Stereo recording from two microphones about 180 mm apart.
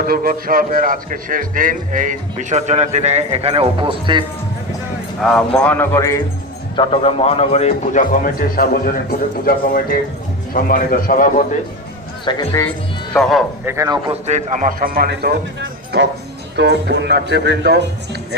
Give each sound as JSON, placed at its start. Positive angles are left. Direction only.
{"t": 0.0, "sound": "a man's voice", "side_deg": -55}
{"t": 5.5, "sound": "a man's voice", "side_deg": 10}
{"t": 6.7, "sound": "a man's voice", "side_deg": 30}
{"t": 12.2, "sound": "speech", "side_deg": 25}
{"t": 13.7, "sound": "a man's voice", "side_deg": -20}
{"t": 14.1, "sound": "a man's voice", "side_deg": -40}
{"t": 16.6, "sound": "a man's voice", "side_deg": -70}